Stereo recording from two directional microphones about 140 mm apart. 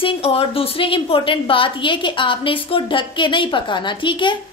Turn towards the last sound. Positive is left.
turn(degrees=35)  # may be behind; listen again after turning